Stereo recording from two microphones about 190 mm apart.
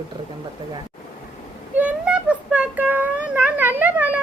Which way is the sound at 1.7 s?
5° right (ahead or behind).